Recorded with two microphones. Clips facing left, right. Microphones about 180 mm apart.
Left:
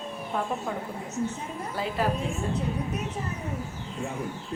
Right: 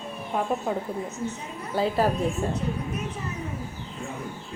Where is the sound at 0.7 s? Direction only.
25° right (ahead or behind).